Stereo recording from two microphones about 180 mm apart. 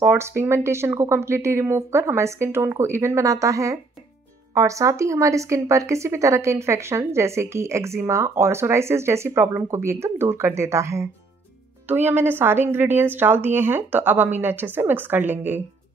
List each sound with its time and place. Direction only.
0.0 s a woman's voice: 15° right (ahead or behind)